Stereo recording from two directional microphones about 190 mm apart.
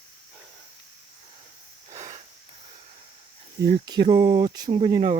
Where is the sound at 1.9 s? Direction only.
40° right (ahead or behind).